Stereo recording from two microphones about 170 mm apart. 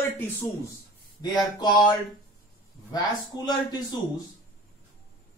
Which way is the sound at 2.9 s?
25° left (ahead or behind).